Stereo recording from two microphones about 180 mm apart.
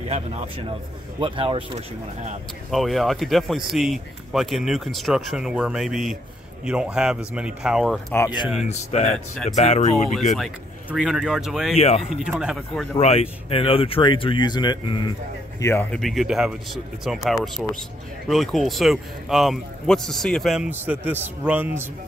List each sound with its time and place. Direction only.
0.1 s speech: 35° right (ahead or behind)
2.7 s speech: centre (ahead or behind)
8.6 s speech: 35° left (ahead or behind)
9.1 s speech: centre (ahead or behind)
9.6 s speech: 35° left (ahead or behind)
10.3 s speech: centre (ahead or behind)
11.7 s speech: 35° left (ahead or behind)
12.2 s speech: 5° right (ahead or behind)
13.0 s speech: 35° left (ahead or behind)
15.6 s speech: 10° left (ahead or behind); by 21.8 s 10° right (ahead or behind)